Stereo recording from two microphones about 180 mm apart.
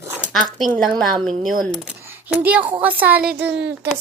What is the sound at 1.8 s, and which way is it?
Speech, 10° right (ahead or behind).